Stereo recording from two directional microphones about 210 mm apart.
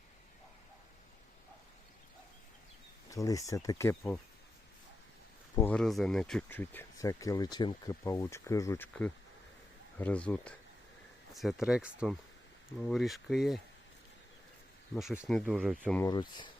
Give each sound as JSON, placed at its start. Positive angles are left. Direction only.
{"t": 3.1, "sound": "speech", "side_deg": 15}
{"t": 5.5, "sound": "speech", "side_deg": 5}
{"t": 14.9, "sound": "speech", "side_deg": -5}
{"t": 15.9, "sound": "speech", "side_deg": 10}
{"t": 16.1, "sound": "speech", "side_deg": 20}